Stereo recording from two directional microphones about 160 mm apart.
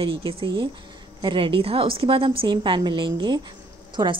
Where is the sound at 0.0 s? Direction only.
35° right (ahead or behind).